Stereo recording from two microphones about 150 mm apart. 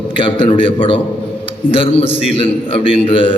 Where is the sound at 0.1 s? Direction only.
35° left (ahead or behind).